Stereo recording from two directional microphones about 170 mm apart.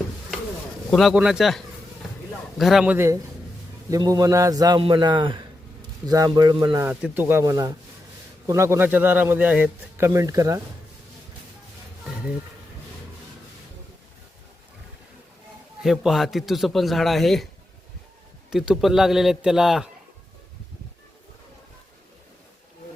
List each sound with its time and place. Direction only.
0.9 s a man's voice: centre (ahead or behind); by 10.6 s 20° right (ahead or behind)
15.8 s a man's voice: centre (ahead or behind)
18.5 s a man's voice: 5° right (ahead or behind)